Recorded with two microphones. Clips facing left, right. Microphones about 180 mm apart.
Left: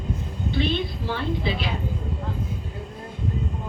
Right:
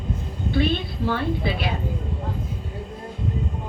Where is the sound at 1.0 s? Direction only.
55° right (ahead or behind).